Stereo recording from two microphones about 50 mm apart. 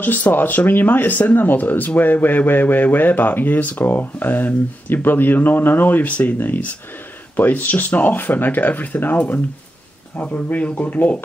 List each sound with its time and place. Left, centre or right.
0.0 s speech: left
10.2 s speech: left